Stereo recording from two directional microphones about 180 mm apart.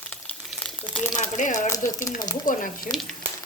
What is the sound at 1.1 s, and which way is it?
Speech, 45° left (ahead or behind).